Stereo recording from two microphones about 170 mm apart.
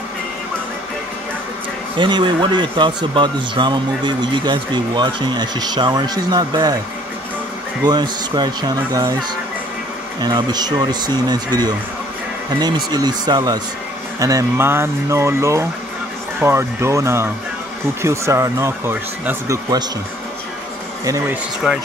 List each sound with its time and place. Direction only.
2.0 s speech: 25° right (ahead or behind)
7.8 s speech: 25° right (ahead or behind)
10.2 s speech: 25° right (ahead or behind)
21.0 s speech: 20° right (ahead or behind)